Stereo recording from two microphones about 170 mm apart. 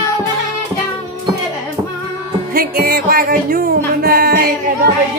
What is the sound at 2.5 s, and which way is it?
Music, 60° right (ahead or behind).